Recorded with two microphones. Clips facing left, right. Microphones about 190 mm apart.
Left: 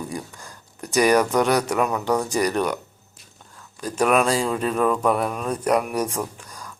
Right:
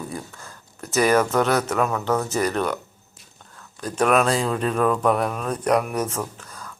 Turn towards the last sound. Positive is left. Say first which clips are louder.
# left 1 dB
turn(degrees=15)  # may be behind; listen again after turning